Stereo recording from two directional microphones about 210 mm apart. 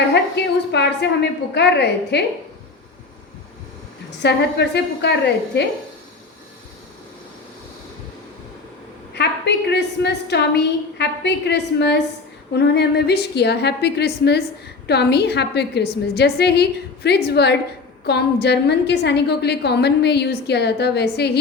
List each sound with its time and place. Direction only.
0.4 s a woman's voice: 50° left (ahead or behind)
4.2 s a woman's voice: 55° left (ahead or behind)
9.1 s a woman's voice: 50° left (ahead or behind)